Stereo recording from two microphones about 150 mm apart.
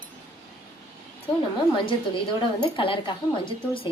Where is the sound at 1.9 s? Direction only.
35° left (ahead or behind).